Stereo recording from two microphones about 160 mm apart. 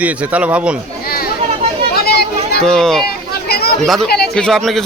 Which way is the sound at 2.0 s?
75° left (ahead or behind).